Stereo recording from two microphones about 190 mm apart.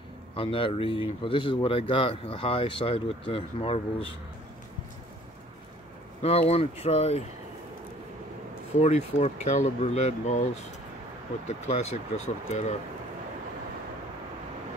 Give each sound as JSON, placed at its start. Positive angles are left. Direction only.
{"t": 0.4, "sound": "speech", "side_deg": 30}
{"t": 6.2, "sound": "speech", "side_deg": 35}
{"t": 8.8, "sound": "speech", "side_deg": 35}